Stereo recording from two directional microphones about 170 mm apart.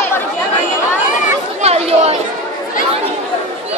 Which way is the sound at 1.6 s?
35° right (ahead or behind).